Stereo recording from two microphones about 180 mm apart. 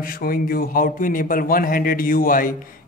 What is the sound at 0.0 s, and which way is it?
Speech, 55° left (ahead or behind).